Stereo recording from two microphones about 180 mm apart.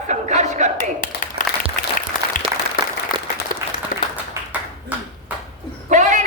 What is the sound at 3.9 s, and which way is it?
Applause, 50° left (ahead or behind).